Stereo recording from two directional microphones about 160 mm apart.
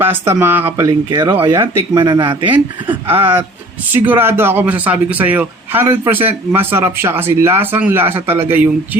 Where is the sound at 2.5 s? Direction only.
10° right (ahead or behind).